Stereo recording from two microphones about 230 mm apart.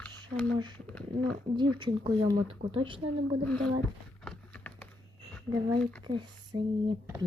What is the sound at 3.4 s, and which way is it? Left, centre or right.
Speech, centre.